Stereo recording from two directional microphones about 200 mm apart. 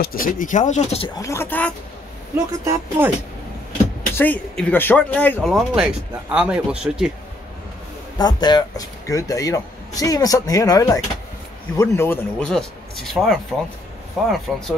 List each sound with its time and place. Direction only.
0.0 s speech: 45° left (ahead or behind)
1.0 s speech: 15° left (ahead or behind)
2.3 s speech: 15° right (ahead or behind)
4.1 s speech: 10° left (ahead or behind)
8.2 s speech: 20° left (ahead or behind); by 14.3 s centre (ahead or behind)